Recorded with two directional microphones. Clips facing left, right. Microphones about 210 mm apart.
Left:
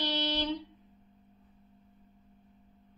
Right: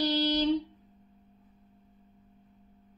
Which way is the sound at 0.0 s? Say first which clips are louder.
Right 6 dB; 35° right (ahead or behind).